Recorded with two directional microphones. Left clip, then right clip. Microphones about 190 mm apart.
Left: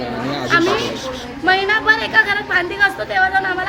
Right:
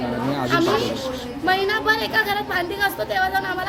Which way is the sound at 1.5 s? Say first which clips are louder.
Left 5 dB; 15° right (ahead or behind).